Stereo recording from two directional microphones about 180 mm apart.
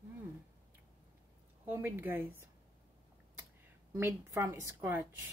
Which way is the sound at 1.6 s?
10° right (ahead or behind).